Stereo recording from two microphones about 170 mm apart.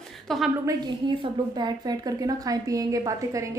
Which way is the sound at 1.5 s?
25° right (ahead or behind).